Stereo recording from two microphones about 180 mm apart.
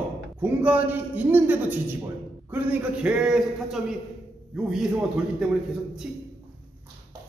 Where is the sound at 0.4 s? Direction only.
10° right (ahead or behind).